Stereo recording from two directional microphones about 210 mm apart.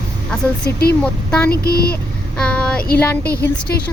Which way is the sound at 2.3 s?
5° left (ahead or behind).